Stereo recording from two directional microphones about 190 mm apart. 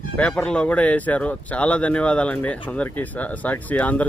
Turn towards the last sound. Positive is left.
turn(degrees=10)  # may be behind; listen again after turning